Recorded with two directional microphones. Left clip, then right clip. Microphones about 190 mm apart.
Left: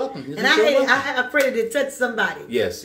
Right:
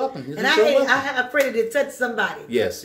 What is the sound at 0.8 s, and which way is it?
A woman's voice, 20° left (ahead or behind).